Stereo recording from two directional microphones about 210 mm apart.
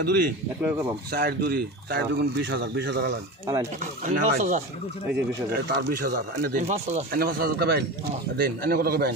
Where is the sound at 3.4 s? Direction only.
15° right (ahead or behind).